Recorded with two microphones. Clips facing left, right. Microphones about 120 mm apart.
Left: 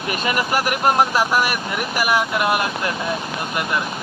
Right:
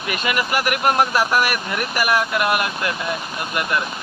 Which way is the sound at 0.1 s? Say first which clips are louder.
Left 1 dB; 30° left (ahead or behind).